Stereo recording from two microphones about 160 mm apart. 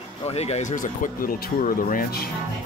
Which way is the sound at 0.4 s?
45° left (ahead or behind).